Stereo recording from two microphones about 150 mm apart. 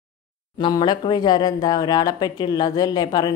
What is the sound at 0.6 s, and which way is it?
Speech, 30° left (ahead or behind).